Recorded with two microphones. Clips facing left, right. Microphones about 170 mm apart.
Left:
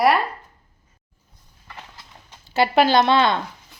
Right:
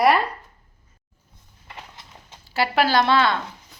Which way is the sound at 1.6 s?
20° right (ahead or behind).